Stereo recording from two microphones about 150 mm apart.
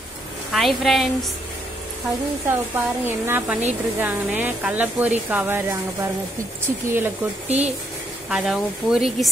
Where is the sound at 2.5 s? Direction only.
15° right (ahead or behind).